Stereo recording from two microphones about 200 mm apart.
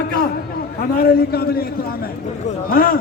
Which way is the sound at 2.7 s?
45° left (ahead or behind).